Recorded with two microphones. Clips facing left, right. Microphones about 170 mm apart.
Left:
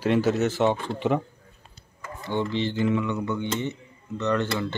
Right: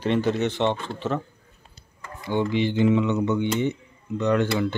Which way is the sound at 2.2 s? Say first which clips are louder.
Right 3 dB; 15° right (ahead or behind).